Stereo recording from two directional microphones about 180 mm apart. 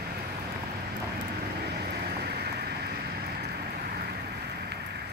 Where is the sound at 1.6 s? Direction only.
65° right (ahead or behind).